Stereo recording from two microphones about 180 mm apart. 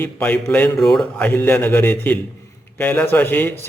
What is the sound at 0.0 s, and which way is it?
A man's voice, 10° left (ahead or behind).